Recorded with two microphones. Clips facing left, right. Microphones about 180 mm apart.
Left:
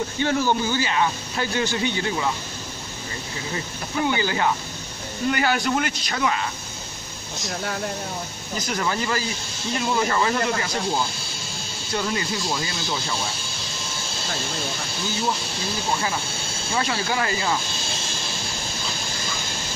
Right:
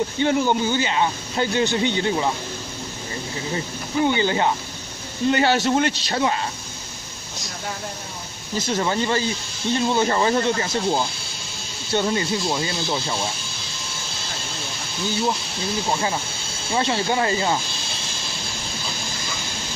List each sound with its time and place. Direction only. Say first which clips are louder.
0.2 s speech: right 2 dB; 20° right (ahead or behind)
3.5 s speech: right 3 dB; 25° right (ahead or behind)
8.5 s speech: right 4 dB; 25° right (ahead or behind)
11.9 s speech: right 4 dB; 25° right (ahead or behind)
16.7 s speech: right 3 dB; 25° right (ahead or behind)